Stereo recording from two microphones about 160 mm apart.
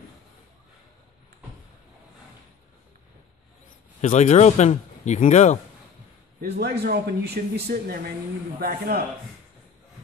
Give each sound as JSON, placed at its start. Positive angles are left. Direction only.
{"t": 4.0, "sound": "speech", "side_deg": 50}
{"t": 6.5, "sound": "speech", "side_deg": -90}